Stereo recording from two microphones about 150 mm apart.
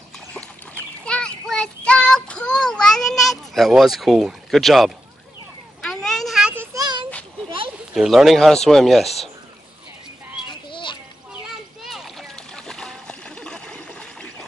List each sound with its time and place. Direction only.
0.3 s child singing: 10° left (ahead or behind)
5.8 s vehicle: 5° left (ahead or behind)
6.5 s child singing: 20° right (ahead or behind)
7.9 s speech: 5° right (ahead or behind)
10.7 s a sound: 35° left (ahead or behind)
11.8 s splash: centre (ahead or behind)